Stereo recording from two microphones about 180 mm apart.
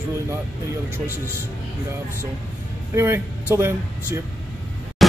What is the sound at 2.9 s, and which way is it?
Speech, 15° right (ahead or behind).